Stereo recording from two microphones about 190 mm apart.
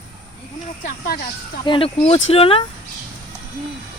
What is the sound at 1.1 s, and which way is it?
Speech, 50° left (ahead or behind).